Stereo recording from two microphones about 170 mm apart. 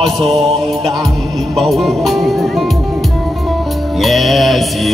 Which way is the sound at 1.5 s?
Centre (ahead or behind).